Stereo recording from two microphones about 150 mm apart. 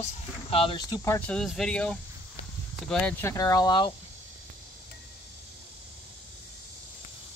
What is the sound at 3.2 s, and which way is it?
Speech, 25° left (ahead or behind).